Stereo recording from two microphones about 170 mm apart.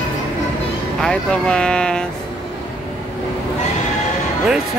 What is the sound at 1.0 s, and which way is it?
Speech, 5° left (ahead or behind).